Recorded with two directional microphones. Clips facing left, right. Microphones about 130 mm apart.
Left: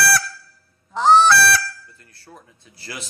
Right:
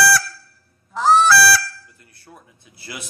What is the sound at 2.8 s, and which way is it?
Speech, 10° right (ahead or behind).